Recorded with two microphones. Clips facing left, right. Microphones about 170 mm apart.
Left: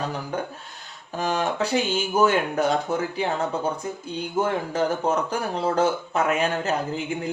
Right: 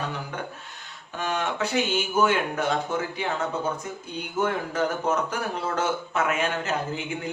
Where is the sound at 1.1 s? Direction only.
35° left (ahead or behind).